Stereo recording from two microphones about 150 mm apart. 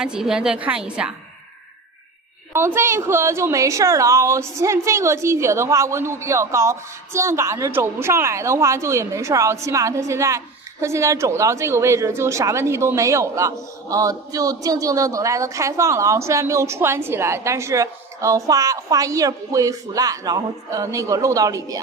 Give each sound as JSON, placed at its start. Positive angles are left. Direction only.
{"t": 0.0, "sound": "a woman's voice", "side_deg": -5}
{"t": 2.5, "sound": "a woman's voice", "side_deg": -15}